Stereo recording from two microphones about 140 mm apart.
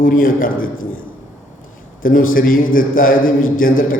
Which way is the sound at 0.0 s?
80° left.